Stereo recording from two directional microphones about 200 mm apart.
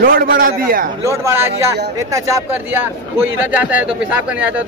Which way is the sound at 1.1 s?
15° right (ahead or behind).